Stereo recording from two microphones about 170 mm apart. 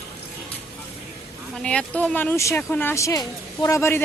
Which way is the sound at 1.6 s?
5° left (ahead or behind).